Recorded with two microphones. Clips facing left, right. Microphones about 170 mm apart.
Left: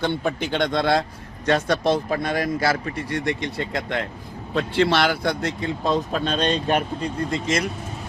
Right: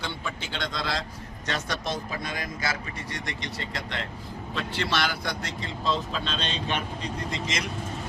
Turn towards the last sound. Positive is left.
turn(degrees=50)  # may be behind; listen again after turning